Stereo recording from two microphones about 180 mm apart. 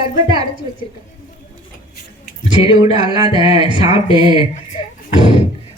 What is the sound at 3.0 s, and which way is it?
Speech, 25° right (ahead or behind).